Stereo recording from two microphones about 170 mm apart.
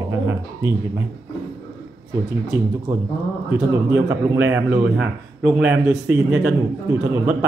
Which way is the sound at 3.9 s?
10° right (ahead or behind).